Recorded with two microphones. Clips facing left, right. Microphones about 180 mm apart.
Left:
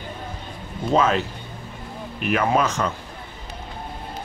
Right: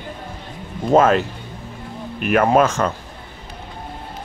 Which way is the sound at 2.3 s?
50° right (ahead or behind).